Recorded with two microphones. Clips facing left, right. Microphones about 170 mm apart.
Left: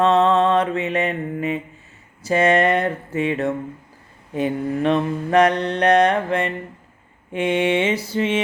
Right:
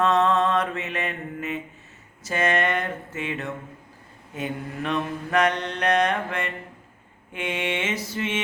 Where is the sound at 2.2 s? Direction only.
35° left (ahead or behind).